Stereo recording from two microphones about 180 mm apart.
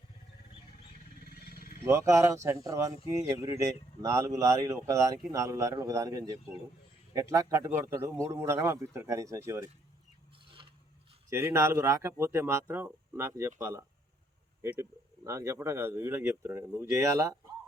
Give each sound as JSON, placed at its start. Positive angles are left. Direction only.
{"t": 1.2, "sound": "wild animals", "side_deg": 60}
{"t": 1.8, "sound": "speech", "side_deg": -15}
{"t": 11.3, "sound": "speech", "side_deg": -15}